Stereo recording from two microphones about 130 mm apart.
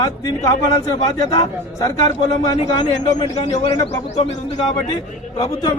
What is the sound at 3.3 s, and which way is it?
Speech, 60° left (ahead or behind).